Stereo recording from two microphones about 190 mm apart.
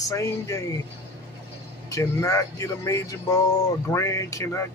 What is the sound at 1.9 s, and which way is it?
Speech, 15° left (ahead or behind).